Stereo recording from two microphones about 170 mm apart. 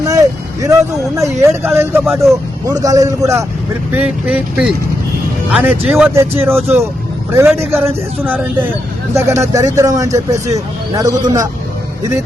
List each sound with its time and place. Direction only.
0.0 s a man's voice: 20° right (ahead or behind)
3.9 s a man's voice: 5° right (ahead or behind)